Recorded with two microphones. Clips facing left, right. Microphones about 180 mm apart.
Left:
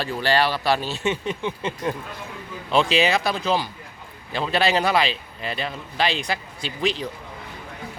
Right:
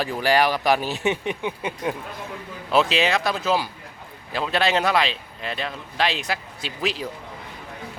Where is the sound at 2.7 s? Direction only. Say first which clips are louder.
Left 1 dB; centre (ahead or behind).